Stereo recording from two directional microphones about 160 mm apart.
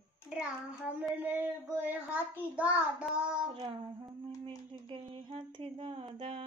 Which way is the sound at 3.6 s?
30° right (ahead or behind).